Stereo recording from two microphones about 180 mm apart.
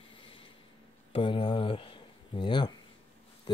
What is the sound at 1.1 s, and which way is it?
Speech, 25° left (ahead or behind).